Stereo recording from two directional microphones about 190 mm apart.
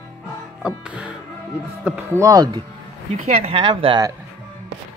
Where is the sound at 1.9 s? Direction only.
10° right (ahead or behind).